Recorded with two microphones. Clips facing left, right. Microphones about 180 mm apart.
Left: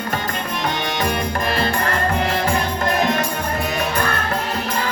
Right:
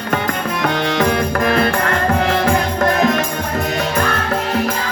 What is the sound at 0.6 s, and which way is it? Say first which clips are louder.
Music: right 6 dB; 90° right.